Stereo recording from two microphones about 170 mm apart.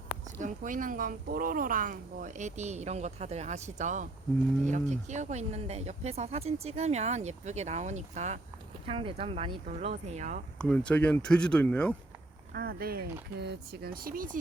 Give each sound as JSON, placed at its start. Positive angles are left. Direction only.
{"t": 0.3, "sound": "speech", "side_deg": -50}
{"t": 10.6, "sound": "speech", "side_deg": 5}
{"t": 12.5, "sound": "speech", "side_deg": -65}
{"t": 13.4, "sound": "speech", "side_deg": -75}